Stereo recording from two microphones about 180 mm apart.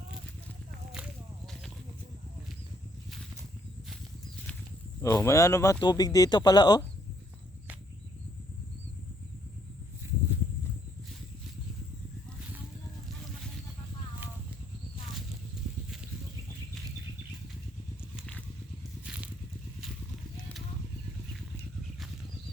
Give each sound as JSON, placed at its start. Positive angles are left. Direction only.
{"t": 0.9, "sound": "walk", "side_deg": 0}
{"t": 5.0, "sound": "speech", "side_deg": 15}
{"t": 10.0, "sound": "walk", "side_deg": -15}
{"t": 18.2, "sound": "vehicle", "side_deg": 5}
{"t": 19.0, "sound": "crushing", "side_deg": -5}